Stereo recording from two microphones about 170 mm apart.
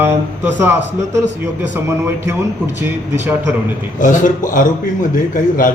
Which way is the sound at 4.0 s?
50° left (ahead or behind).